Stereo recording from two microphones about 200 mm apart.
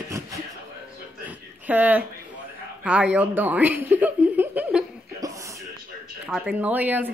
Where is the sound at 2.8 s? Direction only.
5° right (ahead or behind).